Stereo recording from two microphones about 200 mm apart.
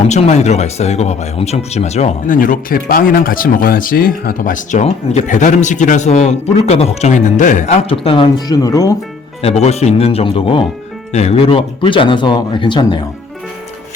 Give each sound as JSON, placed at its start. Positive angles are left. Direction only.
{"t": 0.1, "sound": "speech", "side_deg": 35}
{"t": 9.4, "sound": "speech", "side_deg": 30}